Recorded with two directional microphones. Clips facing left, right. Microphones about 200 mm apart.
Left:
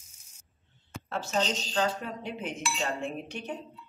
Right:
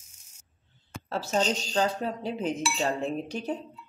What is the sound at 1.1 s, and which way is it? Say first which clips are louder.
Speech: right 3 dB; 35° right (ahead or behind).